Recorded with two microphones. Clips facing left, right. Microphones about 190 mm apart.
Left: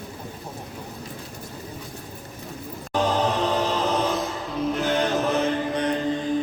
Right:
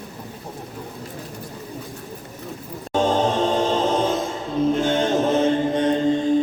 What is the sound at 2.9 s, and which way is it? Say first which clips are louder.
Music: right 3 dB; 25° right (ahead or behind).